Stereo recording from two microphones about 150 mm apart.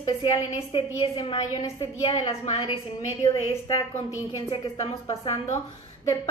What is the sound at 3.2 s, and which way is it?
A woman's voice, 25° left (ahead or behind).